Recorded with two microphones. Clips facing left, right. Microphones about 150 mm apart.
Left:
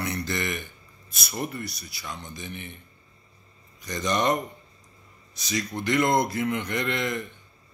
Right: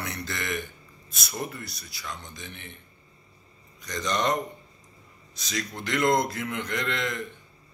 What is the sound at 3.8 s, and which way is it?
Speech, 10° left (ahead or behind).